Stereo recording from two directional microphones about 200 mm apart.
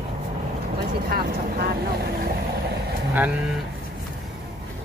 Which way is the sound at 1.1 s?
50° right (ahead or behind).